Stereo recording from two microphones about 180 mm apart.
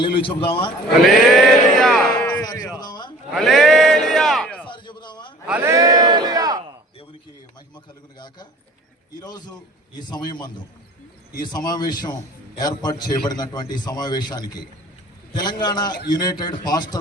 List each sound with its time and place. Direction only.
0.0 s a man's voice: 30° left (ahead or behind)
1.3 s a sound: centre (ahead or behind)
2.4 s a man's voice: 20° left (ahead or behind)
3.3 s speech: centre (ahead or behind)
4.6 s a sound: 25° left (ahead or behind)
5.5 s speech: 15° right (ahead or behind)
9.2 s a man's voice: 20° left (ahead or behind)